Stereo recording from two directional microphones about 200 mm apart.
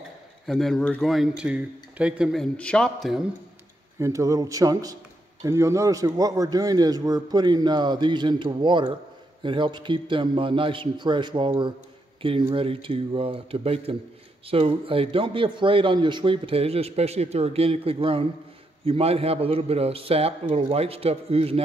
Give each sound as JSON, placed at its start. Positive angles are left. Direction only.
{"t": 0.5, "sound": "speech", "side_deg": 0}
{"t": 4.0, "sound": "a man's voice", "side_deg": -15}